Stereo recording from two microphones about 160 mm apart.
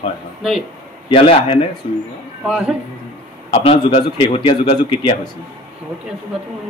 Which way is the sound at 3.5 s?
40° left (ahead or behind).